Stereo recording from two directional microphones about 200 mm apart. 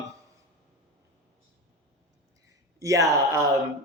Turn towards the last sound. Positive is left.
turn(degrees=-15)  # may be behind; listen again after turning